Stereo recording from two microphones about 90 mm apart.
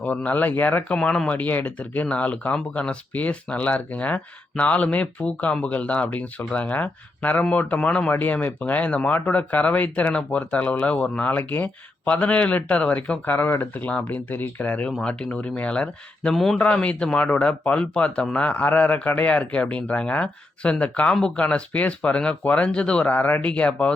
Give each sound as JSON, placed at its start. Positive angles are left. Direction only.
{"t": 0.0, "sound": "speech", "side_deg": 15}
{"t": 1.3, "sound": "speech", "side_deg": 20}
{"t": 16.6, "sound": "speech", "side_deg": 15}